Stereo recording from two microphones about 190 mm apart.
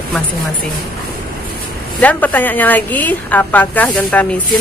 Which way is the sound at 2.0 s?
10° left (ahead or behind).